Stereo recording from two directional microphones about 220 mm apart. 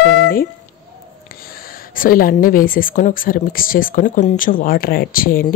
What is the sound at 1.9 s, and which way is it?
Speech, 40° left (ahead or behind).